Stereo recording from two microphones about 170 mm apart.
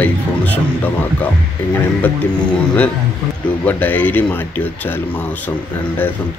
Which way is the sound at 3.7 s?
10° left (ahead or behind).